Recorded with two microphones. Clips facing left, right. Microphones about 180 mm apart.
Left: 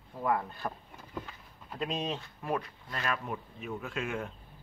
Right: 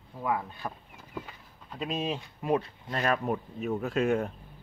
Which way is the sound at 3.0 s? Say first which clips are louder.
Right 7 dB; 40° right (ahead or behind).